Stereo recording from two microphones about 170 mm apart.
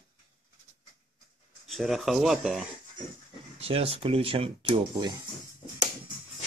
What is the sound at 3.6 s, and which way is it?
Speech, 35° right (ahead or behind).